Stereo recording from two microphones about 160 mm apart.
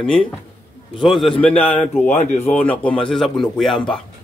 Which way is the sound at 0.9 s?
Centre (ahead or behind).